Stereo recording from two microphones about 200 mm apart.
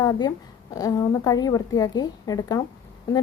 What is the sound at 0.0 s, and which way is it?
A woman's voice, 20° left (ahead or behind).